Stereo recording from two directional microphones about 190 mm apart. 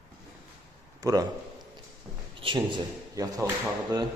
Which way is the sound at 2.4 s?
25° right (ahead or behind).